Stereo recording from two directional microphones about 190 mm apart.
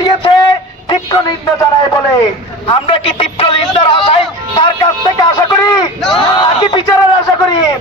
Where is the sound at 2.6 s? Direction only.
25° left (ahead or behind).